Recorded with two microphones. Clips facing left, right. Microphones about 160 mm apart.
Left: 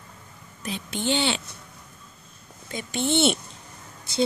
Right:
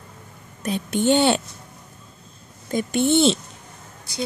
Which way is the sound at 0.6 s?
50° right (ahead or behind).